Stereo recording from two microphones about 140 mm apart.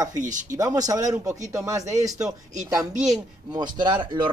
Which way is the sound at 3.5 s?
30° right (ahead or behind).